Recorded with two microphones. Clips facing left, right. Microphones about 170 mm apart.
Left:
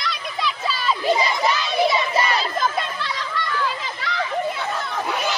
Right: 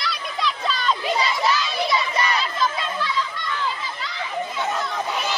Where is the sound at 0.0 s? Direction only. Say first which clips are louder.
Even; 5° left (ahead or behind).